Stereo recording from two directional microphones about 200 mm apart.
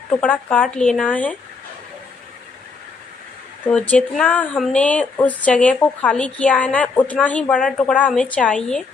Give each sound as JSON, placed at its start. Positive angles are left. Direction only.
{"t": 0.2, "sound": "speech", "side_deg": 5}
{"t": 3.6, "sound": "speech", "side_deg": 5}